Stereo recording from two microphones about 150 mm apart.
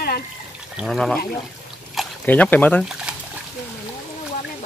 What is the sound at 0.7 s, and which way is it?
Speech, centre (ahead or behind).